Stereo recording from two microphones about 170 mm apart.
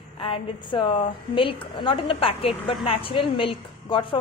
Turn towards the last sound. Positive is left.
turn(degrees=30)  # may be behind; listen again after turning